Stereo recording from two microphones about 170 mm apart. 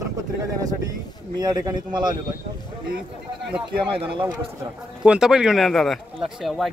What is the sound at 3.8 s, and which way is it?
Speech, 30° right (ahead or behind).